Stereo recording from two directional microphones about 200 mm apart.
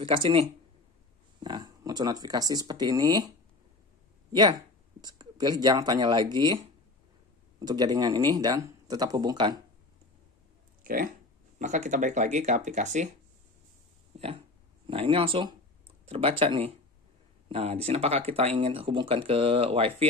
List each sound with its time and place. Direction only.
0.0 s speech: 25° right (ahead or behind)
4.3 s speech: 20° right (ahead or behind)
10.8 s a sound: 45° right (ahead or behind)
11.5 s speech: 35° right (ahead or behind)
14.9 s speech: 30° right (ahead or behind)